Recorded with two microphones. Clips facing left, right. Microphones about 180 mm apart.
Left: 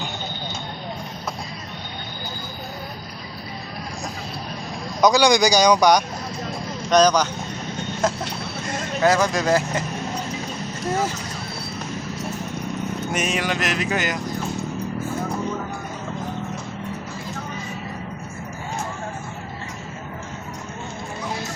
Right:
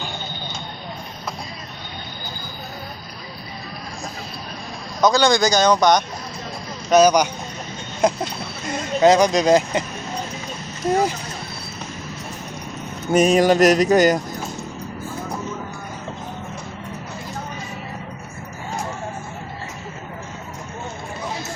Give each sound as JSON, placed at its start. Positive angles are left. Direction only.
{"t": 4.9, "sound": "speech", "side_deg": 15}
{"t": 6.9, "sound": "speech", "side_deg": -10}
{"t": 13.1, "sound": "a sound", "side_deg": -35}